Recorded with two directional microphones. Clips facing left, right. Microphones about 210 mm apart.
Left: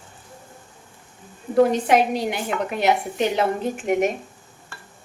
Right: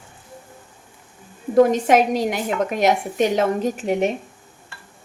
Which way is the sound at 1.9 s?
45° right (ahead or behind).